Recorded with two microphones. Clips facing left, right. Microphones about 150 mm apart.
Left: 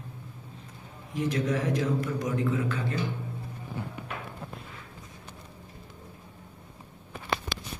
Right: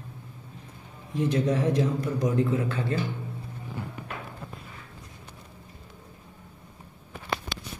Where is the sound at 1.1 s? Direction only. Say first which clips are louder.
Right 3 dB; 30° right (ahead or behind).